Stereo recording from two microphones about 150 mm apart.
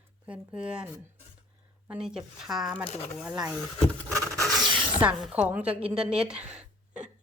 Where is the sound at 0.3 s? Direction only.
10° right (ahead or behind).